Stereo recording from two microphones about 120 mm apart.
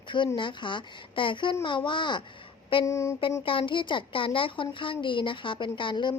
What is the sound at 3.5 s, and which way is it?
A woman's voice, 45° left (ahead or behind).